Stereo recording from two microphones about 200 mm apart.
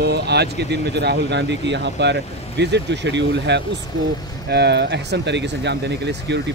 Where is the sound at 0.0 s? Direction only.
55° right (ahead or behind).